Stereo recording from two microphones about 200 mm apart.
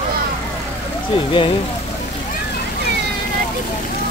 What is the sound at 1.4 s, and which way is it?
Speech, 25° left (ahead or behind).